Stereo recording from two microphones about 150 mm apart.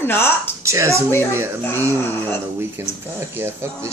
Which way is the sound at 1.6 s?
15° left (ahead or behind).